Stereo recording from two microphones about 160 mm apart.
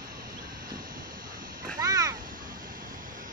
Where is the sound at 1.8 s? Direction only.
20° right (ahead or behind).